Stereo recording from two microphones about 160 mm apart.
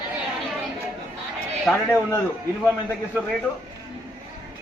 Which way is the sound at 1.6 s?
5° left (ahead or behind).